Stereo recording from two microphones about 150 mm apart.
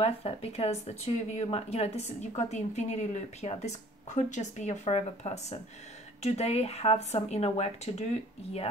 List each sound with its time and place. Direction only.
0.0 s speech: 40° left (ahead or behind)